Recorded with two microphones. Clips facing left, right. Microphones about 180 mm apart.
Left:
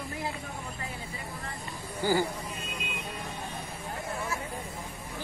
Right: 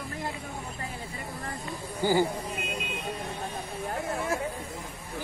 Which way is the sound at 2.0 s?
15° right (ahead or behind).